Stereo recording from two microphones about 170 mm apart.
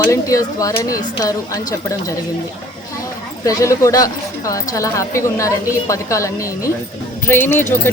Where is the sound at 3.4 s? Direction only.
20° left (ahead or behind).